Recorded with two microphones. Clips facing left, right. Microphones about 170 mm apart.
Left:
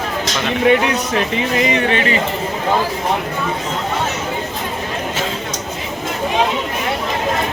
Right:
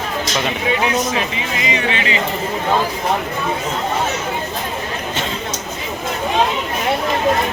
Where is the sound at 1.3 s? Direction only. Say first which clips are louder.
Left 5 dB; 55° left (ahead or behind).